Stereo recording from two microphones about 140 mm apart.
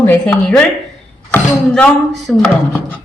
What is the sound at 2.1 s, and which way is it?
Stir, centre (ahead or behind).